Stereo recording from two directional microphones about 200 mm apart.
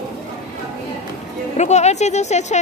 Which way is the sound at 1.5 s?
35° left (ahead or behind).